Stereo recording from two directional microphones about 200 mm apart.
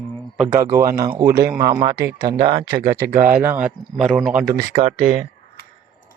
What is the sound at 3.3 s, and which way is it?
Speech, 10° right (ahead or behind).